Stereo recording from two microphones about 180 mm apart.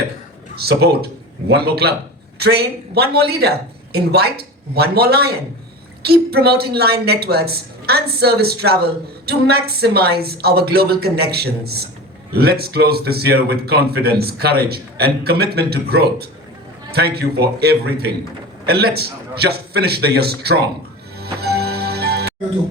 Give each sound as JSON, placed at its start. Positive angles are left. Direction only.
{"t": 0.5, "sound": "speech", "side_deg": -60}
{"t": 21.2, "sound": "music", "side_deg": -60}